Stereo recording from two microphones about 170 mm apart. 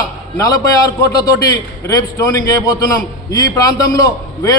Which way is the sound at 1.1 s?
20° left (ahead or behind).